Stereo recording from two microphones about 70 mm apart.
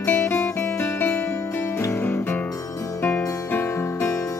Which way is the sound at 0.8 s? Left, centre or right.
Left.